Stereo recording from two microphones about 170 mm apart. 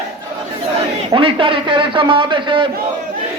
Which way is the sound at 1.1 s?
30° right (ahead or behind).